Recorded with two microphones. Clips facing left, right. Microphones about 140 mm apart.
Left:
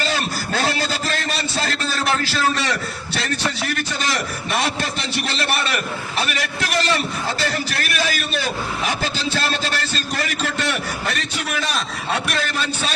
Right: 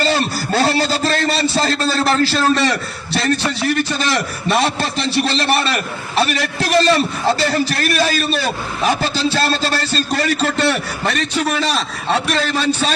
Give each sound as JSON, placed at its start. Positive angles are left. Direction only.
{"t": 0.0, "sound": "a man's voice", "side_deg": -40}